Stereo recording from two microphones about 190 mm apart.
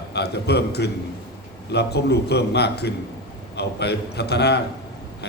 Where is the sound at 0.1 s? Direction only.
60° left (ahead or behind).